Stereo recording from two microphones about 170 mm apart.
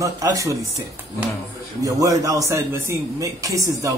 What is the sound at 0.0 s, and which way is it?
Speech, 20° right (ahead or behind).